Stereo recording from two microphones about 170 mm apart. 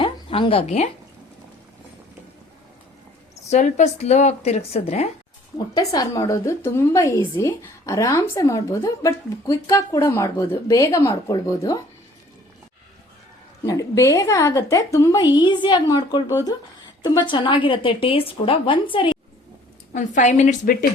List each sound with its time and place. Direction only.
0.0 s a sound: 30° left (ahead or behind)
3.5 s a woman's voice: 45° left (ahead or behind)
5.7 s a woman's voice: 20° left (ahead or behind)
13.7 s a woman's voice: 20° left (ahead or behind)
19.9 s a woman's voice: 45° left (ahead or behind)